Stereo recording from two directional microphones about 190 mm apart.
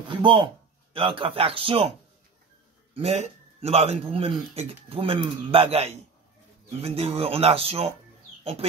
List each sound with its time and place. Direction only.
0.1 s a man's voice: 25° right (ahead or behind)